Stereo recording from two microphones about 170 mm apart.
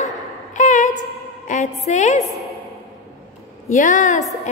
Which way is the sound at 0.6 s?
45° left (ahead or behind).